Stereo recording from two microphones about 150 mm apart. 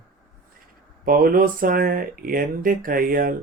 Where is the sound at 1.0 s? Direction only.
75° right (ahead or behind).